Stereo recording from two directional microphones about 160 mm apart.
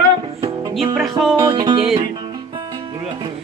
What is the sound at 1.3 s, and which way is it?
Music, 25° right (ahead or behind).